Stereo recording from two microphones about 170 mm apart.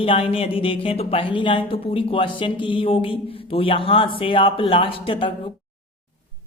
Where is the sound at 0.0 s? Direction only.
35° left (ahead or behind).